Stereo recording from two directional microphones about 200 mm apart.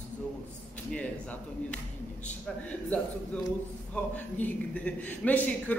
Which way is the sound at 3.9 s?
5° left (ahead or behind).